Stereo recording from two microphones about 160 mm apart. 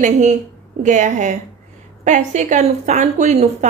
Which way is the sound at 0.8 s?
50° right (ahead or behind).